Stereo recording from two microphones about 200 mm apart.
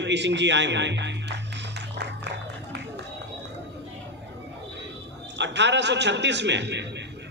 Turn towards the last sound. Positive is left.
turn(degrees=-60)  # may be behind; listen again after turning